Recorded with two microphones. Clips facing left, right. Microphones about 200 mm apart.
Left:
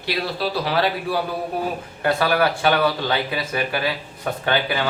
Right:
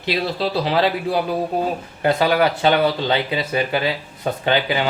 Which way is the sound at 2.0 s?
20° right (ahead or behind).